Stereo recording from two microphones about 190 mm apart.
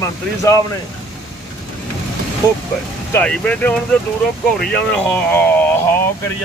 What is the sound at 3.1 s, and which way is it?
Speech, 10° left (ahead or behind).